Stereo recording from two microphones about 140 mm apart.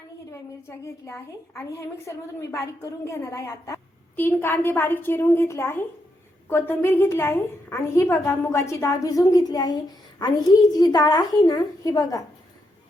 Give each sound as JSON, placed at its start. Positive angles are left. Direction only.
{"t": 0.3, "sound": "a woman's voice", "side_deg": 20}